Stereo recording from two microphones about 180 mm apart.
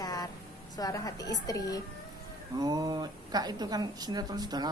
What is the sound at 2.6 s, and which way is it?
Speech, 20° right (ahead or behind).